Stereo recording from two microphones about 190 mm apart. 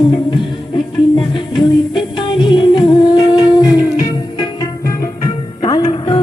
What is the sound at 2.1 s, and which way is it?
Music, 25° left (ahead or behind).